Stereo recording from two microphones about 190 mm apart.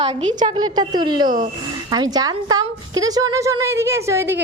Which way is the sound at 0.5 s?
20° right (ahead or behind).